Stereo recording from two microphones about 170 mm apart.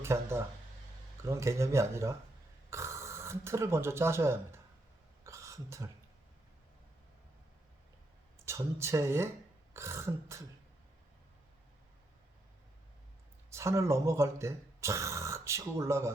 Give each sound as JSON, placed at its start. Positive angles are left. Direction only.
{"t": 0.0, "sound": "speech", "side_deg": -15}
{"t": 5.2, "sound": "a sound", "side_deg": -20}
{"t": 8.4, "sound": "speech", "side_deg": -15}
{"t": 13.5, "sound": "speech", "side_deg": -15}